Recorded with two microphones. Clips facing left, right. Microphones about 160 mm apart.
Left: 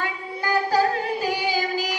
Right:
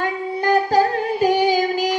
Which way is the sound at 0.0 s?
50° right (ahead or behind).